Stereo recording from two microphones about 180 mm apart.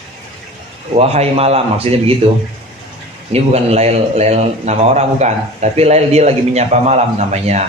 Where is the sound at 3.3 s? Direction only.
35° right (ahead or behind).